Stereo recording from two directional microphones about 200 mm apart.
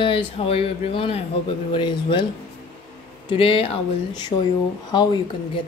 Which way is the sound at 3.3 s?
30° left (ahead or behind).